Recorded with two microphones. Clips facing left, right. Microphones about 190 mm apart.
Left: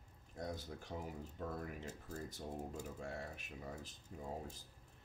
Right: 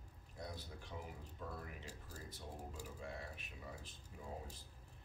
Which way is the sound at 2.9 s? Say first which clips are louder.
Left 3 dB; 45° left (ahead or behind).